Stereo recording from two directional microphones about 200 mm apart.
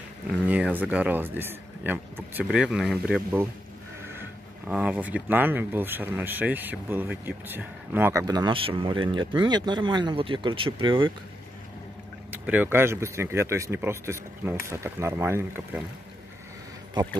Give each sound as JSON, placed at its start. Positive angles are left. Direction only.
{"t": 0.5, "sound": "speech", "side_deg": -10}
{"t": 12.3, "sound": "speech", "side_deg": -10}
{"t": 17.0, "sound": "speech", "side_deg": -20}